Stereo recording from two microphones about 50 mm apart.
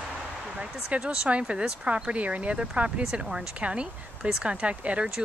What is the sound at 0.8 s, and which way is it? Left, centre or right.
Speech, centre.